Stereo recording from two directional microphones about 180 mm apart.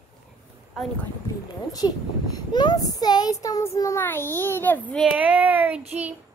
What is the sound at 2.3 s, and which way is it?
A child's voice, 20° left (ahead or behind).